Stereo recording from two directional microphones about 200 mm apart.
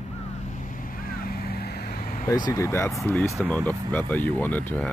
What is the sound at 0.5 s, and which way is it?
Vehicle, 40° left (ahead or behind).